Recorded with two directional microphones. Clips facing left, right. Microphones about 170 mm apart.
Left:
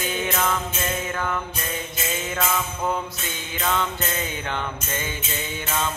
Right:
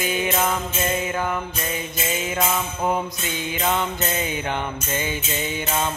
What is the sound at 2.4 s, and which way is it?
Music, 15° right (ahead or behind).